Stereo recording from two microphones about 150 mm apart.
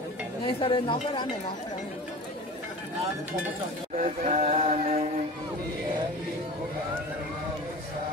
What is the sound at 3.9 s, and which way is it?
Speech, 45° right (ahead or behind).